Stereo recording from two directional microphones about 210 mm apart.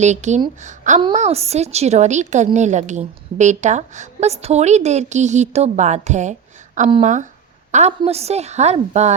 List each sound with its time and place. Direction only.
0.0 s a woman's voice: 35° right (ahead or behind)